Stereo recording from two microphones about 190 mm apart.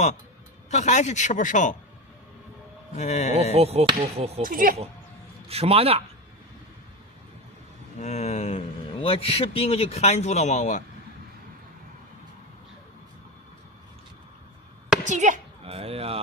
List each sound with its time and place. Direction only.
0.7 s speech: 40° left (ahead or behind)
3.0 s speech: 35° left (ahead or behind)
3.5 s speech: 35° right (ahead or behind)
4.4 s speech: 45° right (ahead or behind)
5.5 s speech: 30° right (ahead or behind)
8.0 s speech: 35° left (ahead or behind)
15.0 s speech: 40° right (ahead or behind)